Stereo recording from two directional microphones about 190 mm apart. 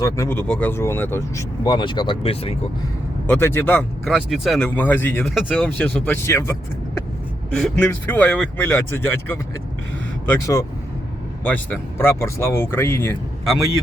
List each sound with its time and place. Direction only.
0.0 s speech: 15° left (ahead or behind); by 2.6 s 30° left (ahead or behind)
3.2 s speech: 10° left (ahead or behind)
4.0 s speech: centre (ahead or behind)
4.7 s speech: 10° left (ahead or behind)
5.2 s speech: centre (ahead or behind)
5.6 s speech: 10° left (ahead or behind)